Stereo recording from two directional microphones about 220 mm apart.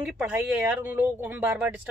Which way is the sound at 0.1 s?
5° right (ahead or behind).